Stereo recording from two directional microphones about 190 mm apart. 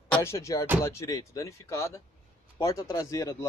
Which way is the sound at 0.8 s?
15° left (ahead or behind).